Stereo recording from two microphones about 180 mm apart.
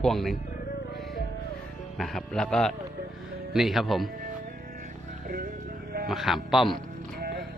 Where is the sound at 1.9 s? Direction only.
Centre (ahead or behind).